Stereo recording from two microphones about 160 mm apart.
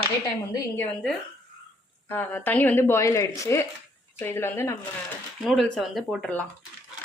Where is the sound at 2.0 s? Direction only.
10° left (ahead or behind).